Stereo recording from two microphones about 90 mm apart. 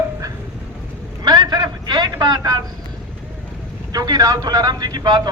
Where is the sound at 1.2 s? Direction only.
50° right (ahead or behind).